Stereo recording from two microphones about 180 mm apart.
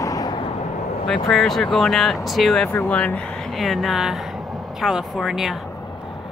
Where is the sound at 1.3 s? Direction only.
Centre (ahead or behind).